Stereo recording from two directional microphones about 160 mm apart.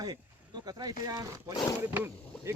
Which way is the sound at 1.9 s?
15° right (ahead or behind).